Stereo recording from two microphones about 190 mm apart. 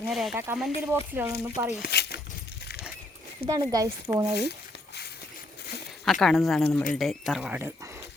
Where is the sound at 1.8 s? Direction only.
60° left (ahead or behind).